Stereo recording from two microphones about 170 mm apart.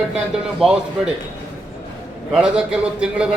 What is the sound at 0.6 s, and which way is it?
Speech, 5° right (ahead or behind).